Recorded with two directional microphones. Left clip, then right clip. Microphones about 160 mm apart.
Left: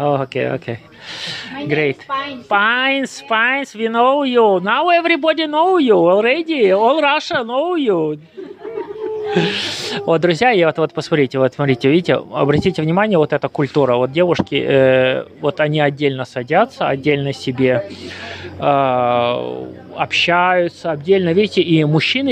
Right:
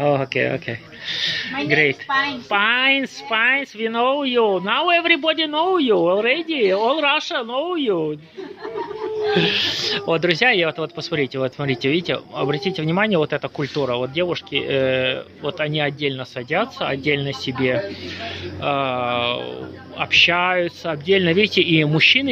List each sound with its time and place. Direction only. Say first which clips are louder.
0.0 s a woman's voice: left 1 dB; 20° left (ahead or behind)
9.3 s a woman's voice: even; 20° left (ahead or behind)